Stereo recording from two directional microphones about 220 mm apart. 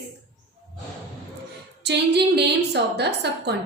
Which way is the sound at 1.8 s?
50° right (ahead or behind).